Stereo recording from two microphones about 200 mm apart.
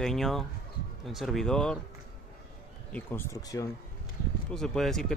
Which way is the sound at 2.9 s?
10° left (ahead or behind).